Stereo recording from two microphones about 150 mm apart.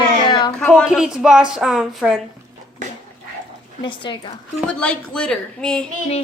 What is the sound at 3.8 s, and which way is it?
Speech, 30° left (ahead or behind).